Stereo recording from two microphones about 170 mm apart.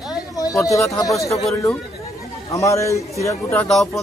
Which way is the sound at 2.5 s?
20° left (ahead or behind).